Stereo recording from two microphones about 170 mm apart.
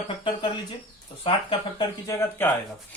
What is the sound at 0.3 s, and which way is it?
Speech, 25° left (ahead or behind).